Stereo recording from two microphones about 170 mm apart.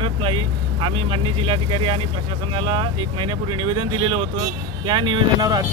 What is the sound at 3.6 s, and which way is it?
Speech, 30° right (ahead or behind).